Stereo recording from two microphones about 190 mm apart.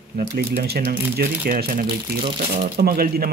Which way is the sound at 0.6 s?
55° right (ahead or behind).